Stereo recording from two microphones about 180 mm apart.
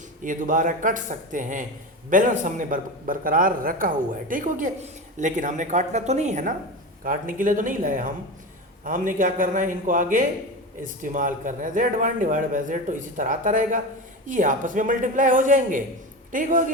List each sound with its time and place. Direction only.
0.2 s a man's voice: 45° right (ahead or behind)
7.0 s a man's voice: 50° right (ahead or behind)